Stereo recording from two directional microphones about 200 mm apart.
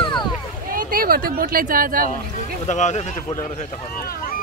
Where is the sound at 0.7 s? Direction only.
45° right (ahead or behind).